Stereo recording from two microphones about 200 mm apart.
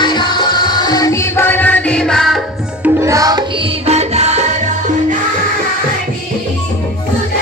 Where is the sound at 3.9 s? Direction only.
35° right (ahead or behind).